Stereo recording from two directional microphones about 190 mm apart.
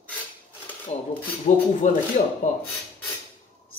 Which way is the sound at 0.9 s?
35° left (ahead or behind).